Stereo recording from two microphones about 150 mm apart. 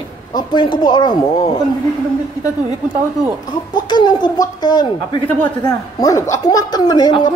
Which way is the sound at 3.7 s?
30° left (ahead or behind).